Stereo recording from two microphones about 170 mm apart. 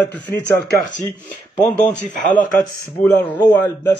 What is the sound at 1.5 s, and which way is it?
Speech, 10° left (ahead or behind).